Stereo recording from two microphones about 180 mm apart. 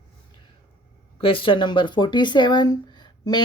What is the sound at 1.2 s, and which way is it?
Speech, 30° left (ahead or behind).